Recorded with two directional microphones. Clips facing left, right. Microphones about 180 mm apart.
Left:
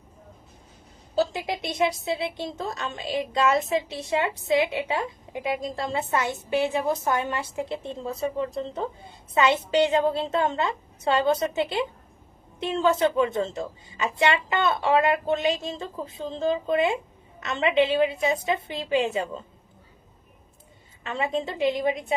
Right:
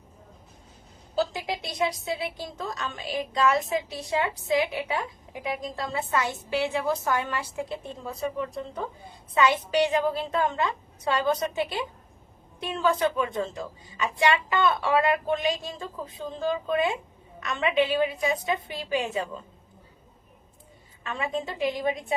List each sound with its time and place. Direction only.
1.1 s a woman's voice: 25° left (ahead or behind)
21.0 s a woman's voice: 25° left (ahead or behind)